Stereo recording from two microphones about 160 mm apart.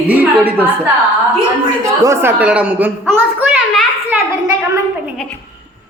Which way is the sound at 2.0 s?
15° right (ahead or behind).